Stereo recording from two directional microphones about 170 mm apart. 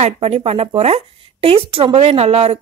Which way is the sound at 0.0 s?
35° right (ahead or behind).